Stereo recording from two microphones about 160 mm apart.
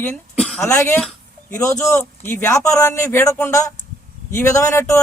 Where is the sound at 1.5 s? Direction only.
20° left (ahead or behind).